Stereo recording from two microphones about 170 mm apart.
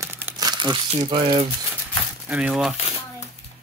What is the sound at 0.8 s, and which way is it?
Speech, 35° right (ahead or behind).